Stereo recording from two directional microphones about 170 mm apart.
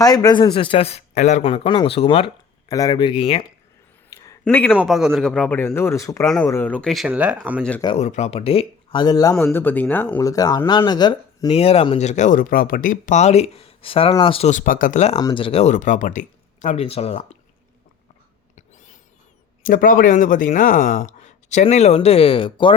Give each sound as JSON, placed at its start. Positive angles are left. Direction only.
{"t": 0.0, "sound": "speech", "side_deg": 20}
{"t": 2.6, "sound": "speech", "side_deg": 20}
{"t": 4.1, "sound": "a sound", "side_deg": 20}
{"t": 4.4, "sound": "speech", "side_deg": 10}
{"t": 4.8, "sound": "speech", "side_deg": -5}
{"t": 6.2, "sound": "speech", "side_deg": 5}
{"t": 7.9, "sound": "speech", "side_deg": 40}
{"t": 9.4, "sound": "speech", "side_deg": 10}
{"t": 14.5, "sound": "speech", "side_deg": 50}
{"t": 15.2, "sound": "speech", "side_deg": 25}
{"t": 19.6, "sound": "speech", "side_deg": 55}